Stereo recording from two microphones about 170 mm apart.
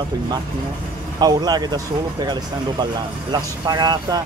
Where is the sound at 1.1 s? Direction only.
25° right (ahead or behind).